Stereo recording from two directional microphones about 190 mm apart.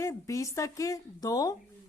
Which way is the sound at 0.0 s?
15° left (ahead or behind).